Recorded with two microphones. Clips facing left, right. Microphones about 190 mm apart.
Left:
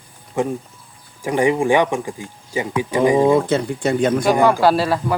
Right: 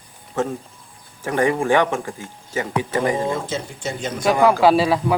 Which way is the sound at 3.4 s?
60° left (ahead or behind).